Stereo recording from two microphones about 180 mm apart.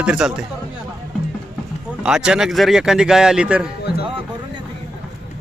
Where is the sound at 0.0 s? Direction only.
5° right (ahead or behind).